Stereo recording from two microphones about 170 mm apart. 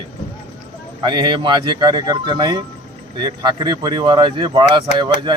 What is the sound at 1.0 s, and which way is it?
Speech, 25° right (ahead or behind).